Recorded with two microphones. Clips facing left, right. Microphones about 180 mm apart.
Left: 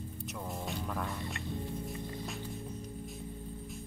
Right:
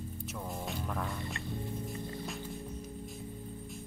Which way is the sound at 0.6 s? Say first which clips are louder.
Even; centre (ahead or behind).